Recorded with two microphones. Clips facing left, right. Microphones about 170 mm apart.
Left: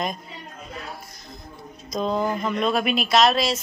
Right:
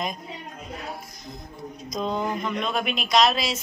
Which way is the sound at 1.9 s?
Centre (ahead or behind).